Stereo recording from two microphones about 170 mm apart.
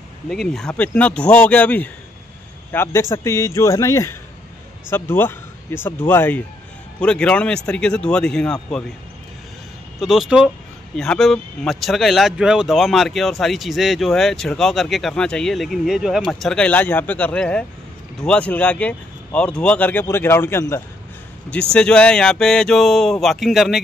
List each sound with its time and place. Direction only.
0.3 s speech: 5° left (ahead or behind)
9.9 s speech: centre (ahead or behind)